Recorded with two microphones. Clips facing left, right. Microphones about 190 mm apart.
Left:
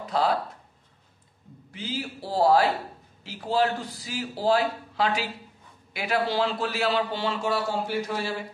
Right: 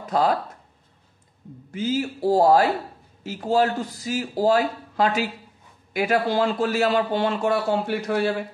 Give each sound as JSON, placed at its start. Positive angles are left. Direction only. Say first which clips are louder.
{"t": 0.0, "sound": "speech", "louder": "right 3 dB", "side_deg": -45}
{"t": 1.7, "sound": "a man's voice", "louder": "right 9 dB", "side_deg": -45}